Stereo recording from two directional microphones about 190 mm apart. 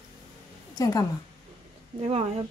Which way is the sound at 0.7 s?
20° left (ahead or behind).